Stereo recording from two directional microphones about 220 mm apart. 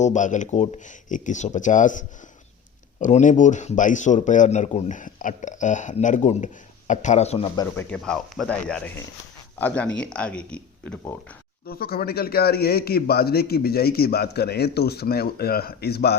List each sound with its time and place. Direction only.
0.0 s a man's voice: 35° left (ahead or behind); by 11.1 s 5° left (ahead or behind)
11.6 s a man's voice: 45° left (ahead or behind)